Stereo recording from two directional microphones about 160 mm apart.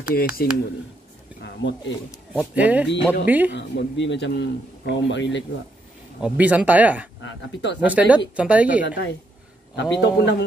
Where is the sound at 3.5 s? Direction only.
90° left.